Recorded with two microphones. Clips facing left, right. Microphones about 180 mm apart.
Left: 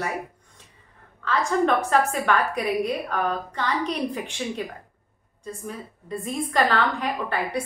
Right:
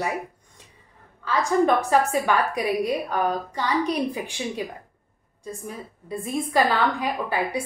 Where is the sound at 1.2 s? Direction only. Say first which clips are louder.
Right 2 dB; 10° right (ahead or behind).